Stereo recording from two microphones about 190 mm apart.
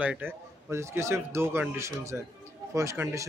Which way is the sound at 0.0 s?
10° right (ahead or behind).